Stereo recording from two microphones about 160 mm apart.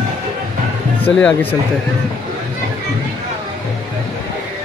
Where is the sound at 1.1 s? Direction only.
10° left (ahead or behind).